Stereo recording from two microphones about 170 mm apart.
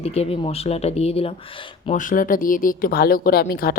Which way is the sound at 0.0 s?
35° left (ahead or behind).